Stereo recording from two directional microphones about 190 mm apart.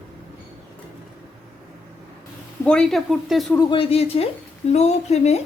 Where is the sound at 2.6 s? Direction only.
5° left (ahead or behind).